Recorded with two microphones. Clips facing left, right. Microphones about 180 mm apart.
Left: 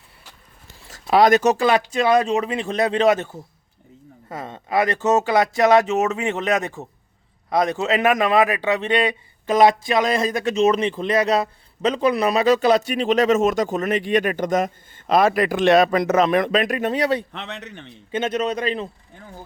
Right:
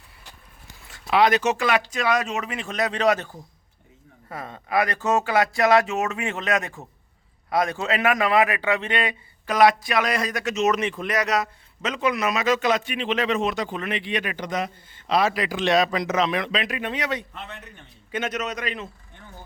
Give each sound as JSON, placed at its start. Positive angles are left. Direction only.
{"t": 0.9, "sound": "speech", "side_deg": 40}
{"t": 4.3, "sound": "speech", "side_deg": 25}
{"t": 17.3, "sound": "a man's voice", "side_deg": 80}
{"t": 18.1, "sound": "speech", "side_deg": 30}